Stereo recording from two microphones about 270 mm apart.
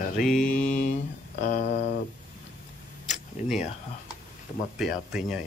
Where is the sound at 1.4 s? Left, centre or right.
Left.